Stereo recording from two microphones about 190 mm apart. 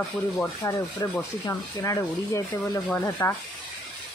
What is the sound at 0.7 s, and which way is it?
Speech, 15° left (ahead or behind).